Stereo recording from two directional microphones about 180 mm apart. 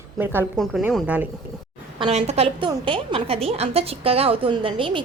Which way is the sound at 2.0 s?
35° right (ahead or behind).